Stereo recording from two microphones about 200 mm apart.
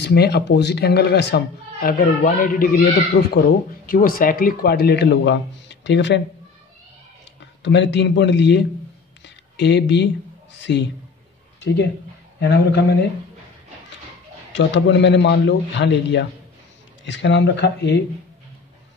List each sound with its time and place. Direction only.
0.0 s a man's voice: 55° left (ahead or behind)
3.1 s a man's voice: 55° left (ahead or behind)
7.6 s a man's voice: 60° left (ahead or behind)
9.2 s a sound: 60° left (ahead or behind)
10.6 s a man's voice: 60° left (ahead or behind)
14.5 s a man's voice: 65° left (ahead or behind)